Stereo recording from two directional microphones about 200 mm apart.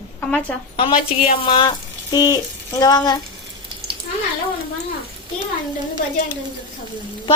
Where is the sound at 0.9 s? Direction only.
30° left (ahead or behind).